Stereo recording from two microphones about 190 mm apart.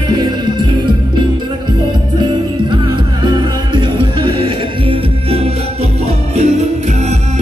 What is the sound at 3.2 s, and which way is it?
Music, 25° right (ahead or behind).